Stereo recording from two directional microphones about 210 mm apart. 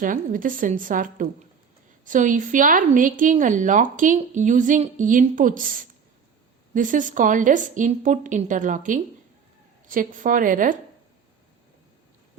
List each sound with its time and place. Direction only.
0.0 s a woman's voice: 40° right (ahead or behind)